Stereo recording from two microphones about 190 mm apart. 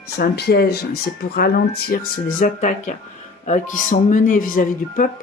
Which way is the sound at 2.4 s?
40° left (ahead or behind).